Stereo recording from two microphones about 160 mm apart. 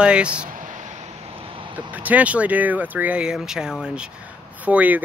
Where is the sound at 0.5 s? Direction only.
55° right (ahead or behind); by 1.7 s 35° right (ahead or behind).